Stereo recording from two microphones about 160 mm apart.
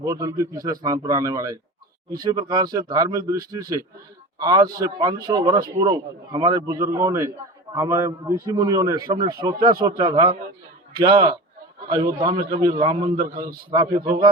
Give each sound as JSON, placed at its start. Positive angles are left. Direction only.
{"t": 0.0, "sound": "a man's voice", "side_deg": -20}